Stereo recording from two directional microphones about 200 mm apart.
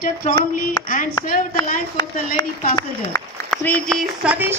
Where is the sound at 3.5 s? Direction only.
5° left (ahead or behind).